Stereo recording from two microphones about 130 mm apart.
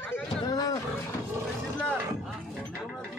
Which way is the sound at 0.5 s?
25° left (ahead or behind).